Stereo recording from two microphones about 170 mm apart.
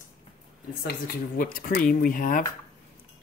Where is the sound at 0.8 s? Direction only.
55° left (ahead or behind).